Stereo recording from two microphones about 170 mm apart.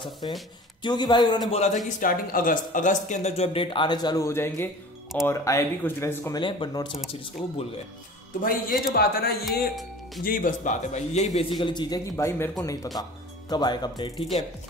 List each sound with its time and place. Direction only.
0.2 s speech: 30° left (ahead or behind)
1.5 s speech: 40° left (ahead or behind)
1.9 s speech: 55° left (ahead or behind); by 6.4 s 15° left (ahead or behind)
6.4 s speech: 25° left (ahead or behind)
8.4 s a man's voice: 55° left (ahead or behind)
11.5 s speech: 25° left (ahead or behind)